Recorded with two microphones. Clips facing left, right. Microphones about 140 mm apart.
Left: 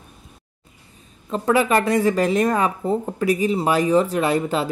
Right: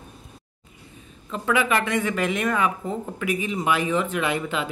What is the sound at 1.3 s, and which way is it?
A man's voice, 35° left (ahead or behind).